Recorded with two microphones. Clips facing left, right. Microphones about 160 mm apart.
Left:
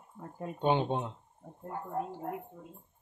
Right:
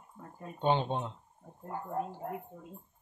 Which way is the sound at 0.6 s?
15° left (ahead or behind).